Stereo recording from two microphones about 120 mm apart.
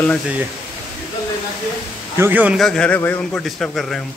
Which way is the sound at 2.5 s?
5° left (ahead or behind).